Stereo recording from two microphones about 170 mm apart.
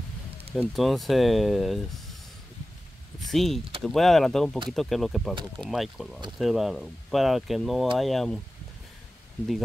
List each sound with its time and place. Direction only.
0.6 s speech: centre (ahead or behind)
3.2 s speech: centre (ahead or behind)
5.3 s speech: 25° right (ahead or behind)
5.7 s speech: centre (ahead or behind)